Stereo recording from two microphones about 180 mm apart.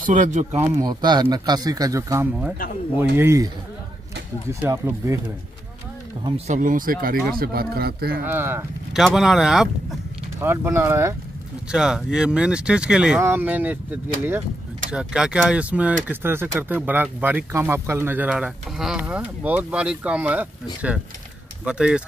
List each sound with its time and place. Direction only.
0.0 s speech: 45° right (ahead or behind)
0.6 s speech: 20° right (ahead or behind)
4.6 s speech: 15° right (ahead or behind)
6.2 s speech: 35° right (ahead or behind); by 8.2 s 60° right (ahead or behind)
8.2 s speech: 10° right (ahead or behind)
11.7 s speech: 5° right (ahead or behind)
14.9 s speech: 5° right (ahead or behind)
21.6 s speech: 5° right (ahead or behind)